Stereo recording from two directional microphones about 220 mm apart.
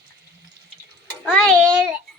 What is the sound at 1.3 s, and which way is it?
Speech, 5° left (ahead or behind).